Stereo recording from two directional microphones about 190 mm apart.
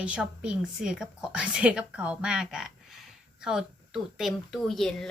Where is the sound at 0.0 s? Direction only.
5° right (ahead or behind).